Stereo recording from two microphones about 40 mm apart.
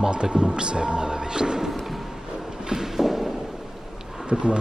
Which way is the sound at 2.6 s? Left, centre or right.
Centre.